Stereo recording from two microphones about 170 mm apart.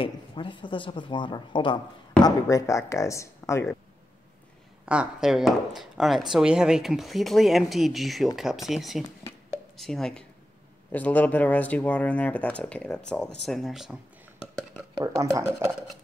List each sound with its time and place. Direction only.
0.0 s speech: 30° left (ahead or behind)
4.8 s speech: 5° right (ahead or behind)
15.1 s speech: 15° right (ahead or behind)